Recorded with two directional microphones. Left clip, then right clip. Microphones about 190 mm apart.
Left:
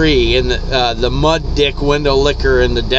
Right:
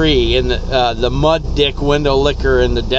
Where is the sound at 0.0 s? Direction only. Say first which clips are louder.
Left 1 dB; centre (ahead or behind).